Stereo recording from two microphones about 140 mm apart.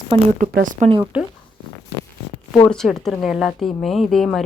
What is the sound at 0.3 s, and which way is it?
Speech, 75° right (ahead or behind).